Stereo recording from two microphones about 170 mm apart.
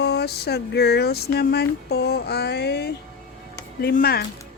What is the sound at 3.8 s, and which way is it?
Speech, 65° left (ahead or behind).